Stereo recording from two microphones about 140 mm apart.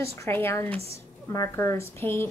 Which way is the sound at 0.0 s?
20° left (ahead or behind).